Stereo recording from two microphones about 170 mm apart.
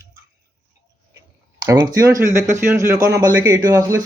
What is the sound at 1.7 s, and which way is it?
A man's voice, 20° right (ahead or behind).